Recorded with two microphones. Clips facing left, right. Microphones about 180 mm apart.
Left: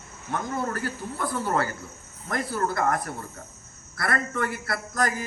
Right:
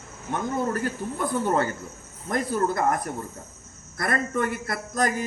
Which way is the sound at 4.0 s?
15° right (ahead or behind).